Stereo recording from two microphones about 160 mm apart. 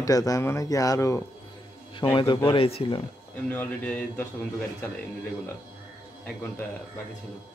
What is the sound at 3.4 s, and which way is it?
Speech, 10° left (ahead or behind).